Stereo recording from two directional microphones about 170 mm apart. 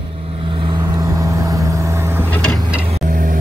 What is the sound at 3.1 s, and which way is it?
Vehicle, 55° right (ahead or behind).